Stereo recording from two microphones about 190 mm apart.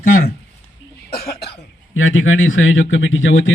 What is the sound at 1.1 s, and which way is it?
Cough, 55° left (ahead or behind).